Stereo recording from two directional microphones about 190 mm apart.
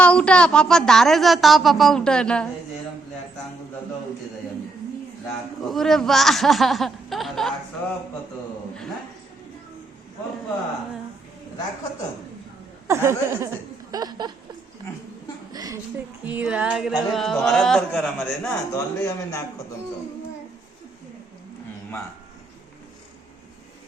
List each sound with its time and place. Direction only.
0.0 s a woman's voice: 5° left (ahead or behind)
5.6 s a woman's voice: centre (ahead or behind)
12.9 s speech: 15° right (ahead or behind)
13.9 s a sound: 20° right (ahead or behind)
15.5 s a sound: 20° right (ahead or behind)
16.2 s a woman's voice: 10° right (ahead or behind)
18.7 s a man's voice: 15° left (ahead or behind)